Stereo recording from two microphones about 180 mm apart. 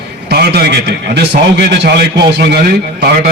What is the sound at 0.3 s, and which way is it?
A man's voice, 65° right (ahead or behind).